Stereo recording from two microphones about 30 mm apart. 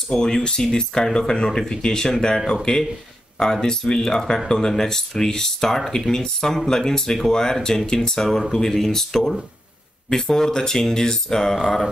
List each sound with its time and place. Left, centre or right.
0.1 s speech: centre
11.5 s speech: centre